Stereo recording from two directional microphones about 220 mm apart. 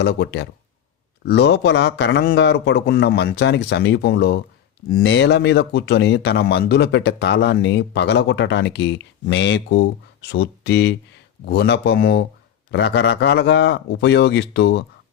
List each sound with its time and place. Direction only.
0.0 s speech: 50° left (ahead or behind)